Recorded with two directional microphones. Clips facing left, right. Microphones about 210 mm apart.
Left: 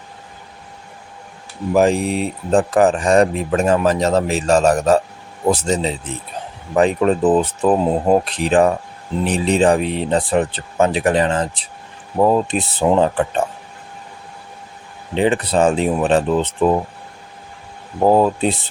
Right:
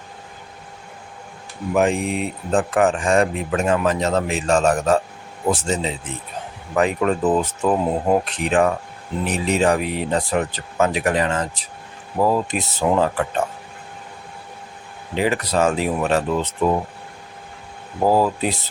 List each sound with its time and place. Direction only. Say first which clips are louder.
1.7 s speech: left 4 dB; 35° left (ahead or behind)
15.1 s speech: left 4 dB; 30° left (ahead or behind)
18.0 s speech: left 4 dB; 25° left (ahead or behind)